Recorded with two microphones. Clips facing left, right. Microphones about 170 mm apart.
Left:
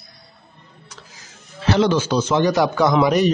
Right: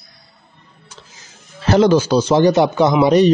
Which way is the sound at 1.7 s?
40° right (ahead or behind).